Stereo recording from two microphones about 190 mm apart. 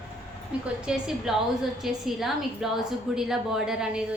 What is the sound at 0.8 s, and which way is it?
A woman's voice, 5° right (ahead or behind).